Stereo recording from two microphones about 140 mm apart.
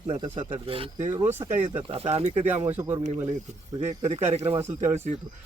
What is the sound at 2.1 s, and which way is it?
Speech, 50° right (ahead or behind).